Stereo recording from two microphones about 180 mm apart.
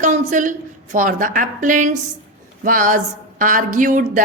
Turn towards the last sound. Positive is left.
turn(degrees=-45)  # may be behind; listen again after turning